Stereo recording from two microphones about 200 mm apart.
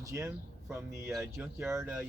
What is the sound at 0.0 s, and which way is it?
Speech, 15° right (ahead or behind).